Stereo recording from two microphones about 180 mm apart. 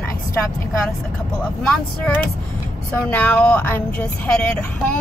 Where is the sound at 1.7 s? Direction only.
5° left (ahead or behind).